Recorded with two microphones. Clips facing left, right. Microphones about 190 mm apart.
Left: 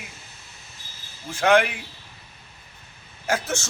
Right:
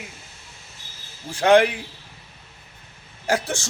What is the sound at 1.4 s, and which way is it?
Speech, 35° right (ahead or behind).